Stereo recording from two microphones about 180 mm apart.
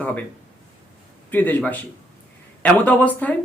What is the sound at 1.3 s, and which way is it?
Speech, 10° left (ahead or behind).